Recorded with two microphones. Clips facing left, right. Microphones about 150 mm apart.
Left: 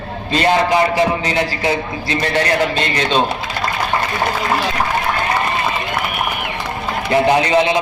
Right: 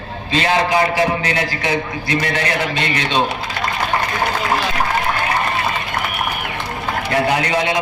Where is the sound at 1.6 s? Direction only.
30° left (ahead or behind).